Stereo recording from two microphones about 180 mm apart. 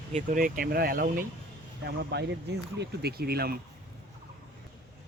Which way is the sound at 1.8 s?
70° right (ahead or behind).